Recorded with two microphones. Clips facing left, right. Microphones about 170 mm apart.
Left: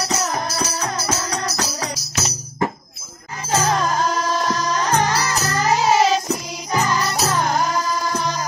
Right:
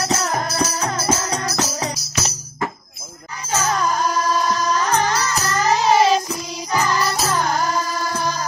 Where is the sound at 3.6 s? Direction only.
30° left (ahead or behind).